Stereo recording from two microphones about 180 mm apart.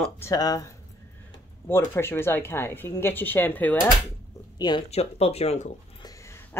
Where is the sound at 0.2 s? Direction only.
20° left (ahead or behind).